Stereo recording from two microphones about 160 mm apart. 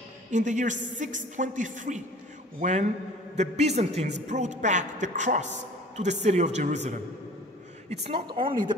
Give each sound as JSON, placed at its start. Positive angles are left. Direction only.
{"t": 0.3, "sound": "a woman's voice", "side_deg": -50}